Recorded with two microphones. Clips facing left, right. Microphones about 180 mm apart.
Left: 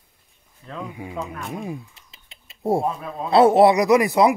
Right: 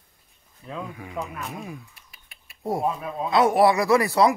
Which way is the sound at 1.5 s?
25° left (ahead or behind).